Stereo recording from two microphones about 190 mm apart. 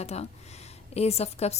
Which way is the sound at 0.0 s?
35° left (ahead or behind).